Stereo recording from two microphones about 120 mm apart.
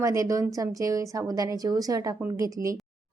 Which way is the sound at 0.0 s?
25° right (ahead or behind).